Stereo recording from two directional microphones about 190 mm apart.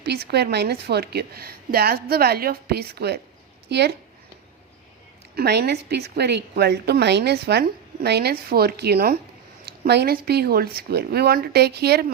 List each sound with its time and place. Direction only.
0.0 s a woman's voice: 60° right (ahead or behind)
5.3 s a woman's voice: 60° right (ahead or behind)